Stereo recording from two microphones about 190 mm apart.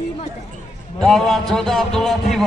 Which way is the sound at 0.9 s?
Centre (ahead or behind).